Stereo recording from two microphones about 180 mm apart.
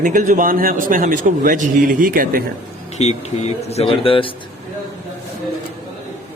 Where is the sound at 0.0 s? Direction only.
45° right (ahead or behind).